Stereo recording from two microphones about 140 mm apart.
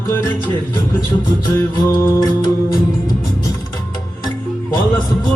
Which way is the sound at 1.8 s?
25° left (ahead or behind).